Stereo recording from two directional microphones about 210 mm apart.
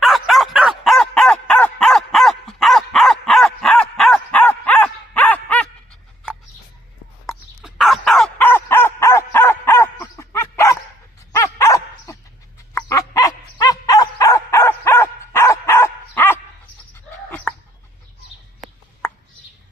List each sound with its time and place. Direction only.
0.0 s a sound: centre (ahead or behind)
7.2 s fowl: centre (ahead or behind)
11.3 s dog: 15° left (ahead or behind)
17.5 s chicken: 5° left (ahead or behind)